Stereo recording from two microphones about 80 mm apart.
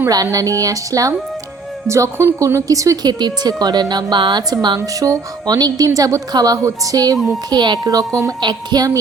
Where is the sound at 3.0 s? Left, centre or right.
Right.